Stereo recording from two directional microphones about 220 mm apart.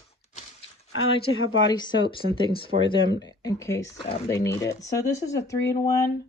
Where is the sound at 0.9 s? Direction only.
65° left (ahead or behind).